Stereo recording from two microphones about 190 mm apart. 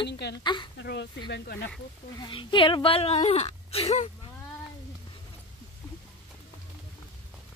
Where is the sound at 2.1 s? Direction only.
25° left (ahead or behind).